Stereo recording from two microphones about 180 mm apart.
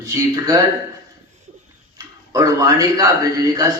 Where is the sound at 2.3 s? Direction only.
20° right (ahead or behind).